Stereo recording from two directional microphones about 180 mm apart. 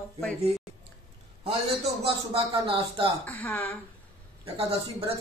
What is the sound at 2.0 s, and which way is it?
Speech, 30° right (ahead or behind).